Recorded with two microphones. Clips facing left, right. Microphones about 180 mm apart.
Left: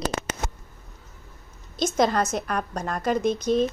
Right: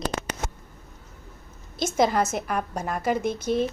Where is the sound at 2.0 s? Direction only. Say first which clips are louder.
Right 1 dB; 10° right (ahead or behind).